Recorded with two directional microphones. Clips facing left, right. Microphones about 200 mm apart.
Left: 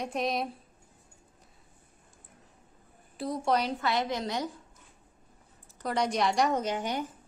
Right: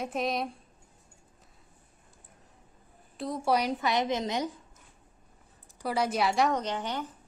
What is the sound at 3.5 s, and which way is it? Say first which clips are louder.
A woman's voice: right 2 dB; 15° right (ahead or behind).